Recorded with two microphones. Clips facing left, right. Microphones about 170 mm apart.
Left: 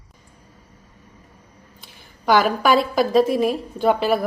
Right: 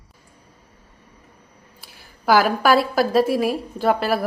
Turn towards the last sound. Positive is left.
turn(degrees=0)  # may be behind; listen again after turning